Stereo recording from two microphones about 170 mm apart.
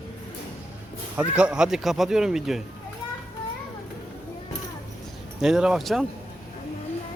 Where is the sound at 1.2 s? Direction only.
5° right (ahead or behind).